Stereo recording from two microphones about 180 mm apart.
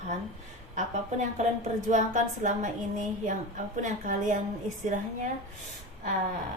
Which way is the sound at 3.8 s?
45° right (ahead or behind).